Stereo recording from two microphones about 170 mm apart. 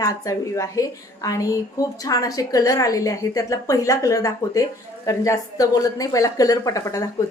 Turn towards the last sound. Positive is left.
turn(degrees=20)  # may be behind; listen again after turning